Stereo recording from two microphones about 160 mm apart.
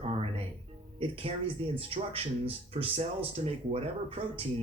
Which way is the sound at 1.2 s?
35° right (ahead or behind).